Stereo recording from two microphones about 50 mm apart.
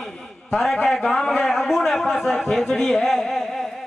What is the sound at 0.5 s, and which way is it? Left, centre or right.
Speech, centre.